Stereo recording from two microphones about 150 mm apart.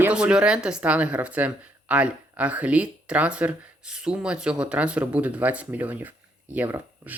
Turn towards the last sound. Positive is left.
turn(degrees=-10)  # may be behind; listen again after turning